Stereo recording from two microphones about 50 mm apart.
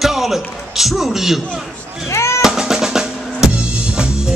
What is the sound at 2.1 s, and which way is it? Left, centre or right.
Music, left.